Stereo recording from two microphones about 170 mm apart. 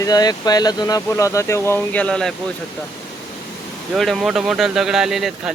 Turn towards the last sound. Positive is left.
turn(degrees=0)  # may be behind; listen again after turning